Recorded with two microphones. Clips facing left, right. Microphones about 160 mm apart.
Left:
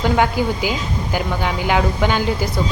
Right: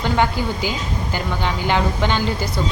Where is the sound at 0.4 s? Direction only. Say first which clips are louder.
Left 3 dB; 10° left (ahead or behind).